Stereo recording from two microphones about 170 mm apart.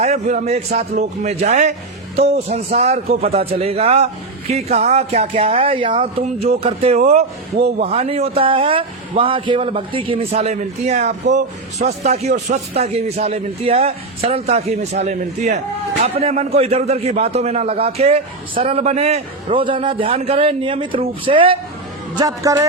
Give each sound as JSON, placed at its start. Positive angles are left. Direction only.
{"t": 0.0, "sound": "a man's voice", "side_deg": -45}
{"t": 22.2, "sound": "a man's voice", "side_deg": -20}